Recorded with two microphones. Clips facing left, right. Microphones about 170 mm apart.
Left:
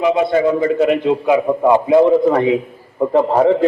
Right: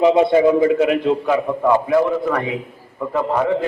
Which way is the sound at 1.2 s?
15° left (ahead or behind).